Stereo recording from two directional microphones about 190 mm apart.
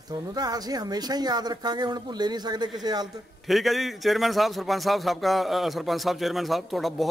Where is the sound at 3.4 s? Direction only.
Centre (ahead or behind).